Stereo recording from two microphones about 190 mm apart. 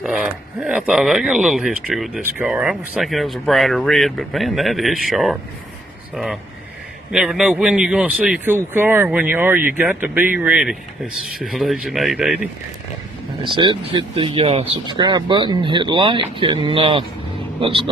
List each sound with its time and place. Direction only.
0.0 s speech: 5° right (ahead or behind)
7.1 s speech: 5° right (ahead or behind)
11.2 s speech: 50° right (ahead or behind)
11.5 s speech: centre (ahead or behind)
13.4 s speech: 25° right (ahead or behind)